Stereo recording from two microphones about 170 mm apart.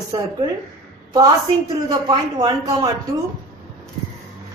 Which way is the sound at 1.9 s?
25° right (ahead or behind).